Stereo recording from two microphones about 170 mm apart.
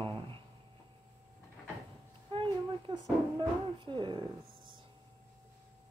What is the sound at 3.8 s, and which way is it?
Speech, 30° right (ahead or behind).